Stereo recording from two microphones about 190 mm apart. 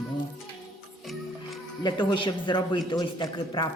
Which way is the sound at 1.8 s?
25° left (ahead or behind).